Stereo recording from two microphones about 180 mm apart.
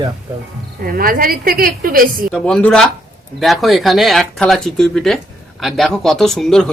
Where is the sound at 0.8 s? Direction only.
55° right (ahead or behind).